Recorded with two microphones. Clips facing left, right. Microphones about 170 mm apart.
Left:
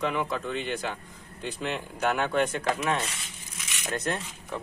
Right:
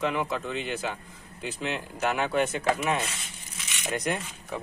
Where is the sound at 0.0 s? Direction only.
Centre (ahead or behind).